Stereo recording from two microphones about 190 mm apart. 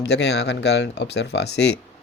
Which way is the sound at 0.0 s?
60° left (ahead or behind).